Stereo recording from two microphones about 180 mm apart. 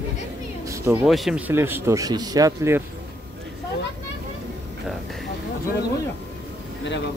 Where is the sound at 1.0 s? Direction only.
Centre (ahead or behind).